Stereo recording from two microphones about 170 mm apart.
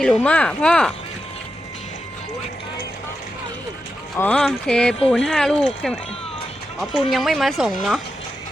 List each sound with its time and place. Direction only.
0.0 s speech: 5° left (ahead or behind)
4.2 s speech: 5° left (ahead or behind)
7.1 s speech: centre (ahead or behind)